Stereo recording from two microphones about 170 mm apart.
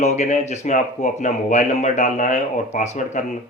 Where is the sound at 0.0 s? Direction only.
45° left (ahead or behind).